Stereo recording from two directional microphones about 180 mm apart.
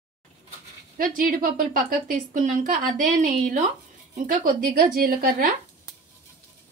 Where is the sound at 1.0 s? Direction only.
50° right (ahead or behind).